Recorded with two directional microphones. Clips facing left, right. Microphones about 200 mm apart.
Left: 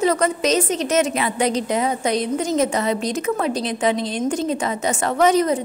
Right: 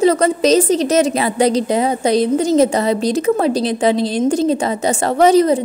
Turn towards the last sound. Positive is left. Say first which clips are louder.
# right 5 dB
turn(degrees=-35)  # may be behind; listen again after turning